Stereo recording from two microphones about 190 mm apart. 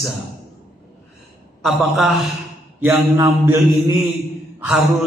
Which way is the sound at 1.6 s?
Centre (ahead or behind).